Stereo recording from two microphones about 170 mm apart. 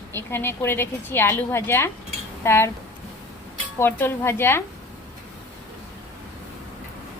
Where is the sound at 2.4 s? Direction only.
15° left (ahead or behind).